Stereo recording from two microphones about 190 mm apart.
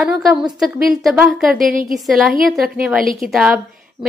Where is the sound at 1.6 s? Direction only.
50° right (ahead or behind).